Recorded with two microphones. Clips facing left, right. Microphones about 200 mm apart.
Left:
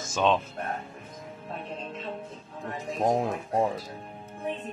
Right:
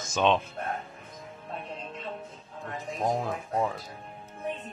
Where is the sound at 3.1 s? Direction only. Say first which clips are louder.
Left 3 dB; 30° left (ahead or behind).